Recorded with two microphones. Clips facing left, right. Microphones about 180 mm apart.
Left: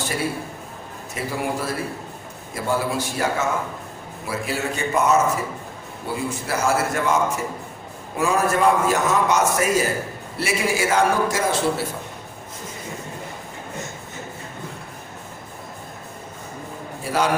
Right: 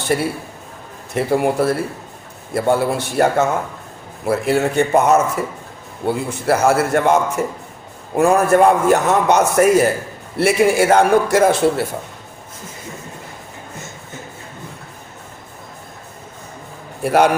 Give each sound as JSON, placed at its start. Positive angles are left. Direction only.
{"t": 0.1, "sound": "a man's voice", "side_deg": -55}
{"t": 17.0, "sound": "a man's voice", "side_deg": -60}